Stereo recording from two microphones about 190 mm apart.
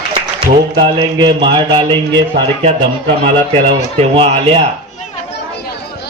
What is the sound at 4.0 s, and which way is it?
Speech, 30° right (ahead or behind).